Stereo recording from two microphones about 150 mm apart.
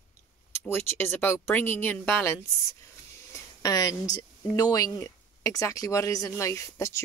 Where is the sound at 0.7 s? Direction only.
15° left (ahead or behind).